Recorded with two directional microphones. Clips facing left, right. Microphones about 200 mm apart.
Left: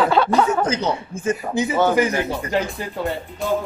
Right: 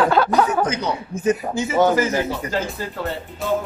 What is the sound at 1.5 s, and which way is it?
Speech, 20° left (ahead or behind).